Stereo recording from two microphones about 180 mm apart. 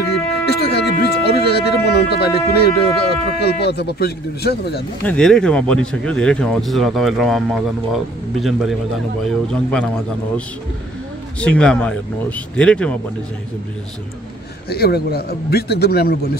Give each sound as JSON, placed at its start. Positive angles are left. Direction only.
{"t": 0.0, "sound": "music", "side_deg": 65}
{"t": 3.4, "sound": "a man's voice", "side_deg": 65}
{"t": 5.0, "sound": "speech", "side_deg": 5}
{"t": 11.3, "sound": "speech", "side_deg": 5}
{"t": 14.7, "sound": "a man's voice", "side_deg": 60}